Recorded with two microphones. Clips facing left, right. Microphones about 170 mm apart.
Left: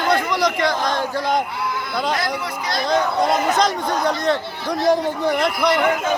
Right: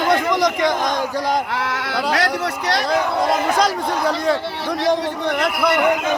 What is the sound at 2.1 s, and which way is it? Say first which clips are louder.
Speech: right 3 dB; 75° right (ahead or behind).